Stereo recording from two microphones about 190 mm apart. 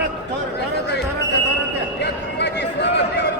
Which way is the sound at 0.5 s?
60° left (ahead or behind).